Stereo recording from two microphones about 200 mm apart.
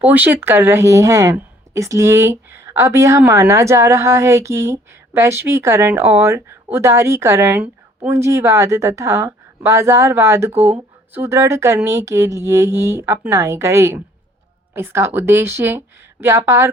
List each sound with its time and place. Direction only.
0.0 s speech: 10° right (ahead or behind)